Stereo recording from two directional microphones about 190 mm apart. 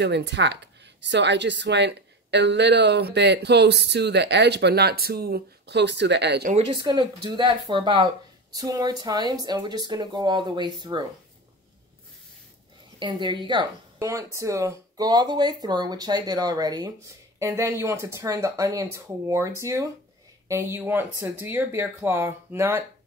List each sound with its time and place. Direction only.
0.0 s speech: 65° right (ahead or behind)
6.5 s speech: 30° right (ahead or behind)
13.0 s speech: 25° right (ahead or behind)